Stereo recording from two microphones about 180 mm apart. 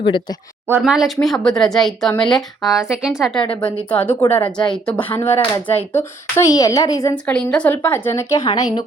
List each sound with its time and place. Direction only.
0.0 s speech: 25° left (ahead or behind)
0.8 s speech: centre (ahead or behind)
3.4 s speech: 30° left (ahead or behind)
3.8 s a woman's voice: 10° left (ahead or behind)
5.1 s speech: 30° left (ahead or behind)
5.6 s a woman's voice: 10° left (ahead or behind)
7.3 s a woman's voice: 5° left (ahead or behind); by 8.8 s 25° left (ahead or behind)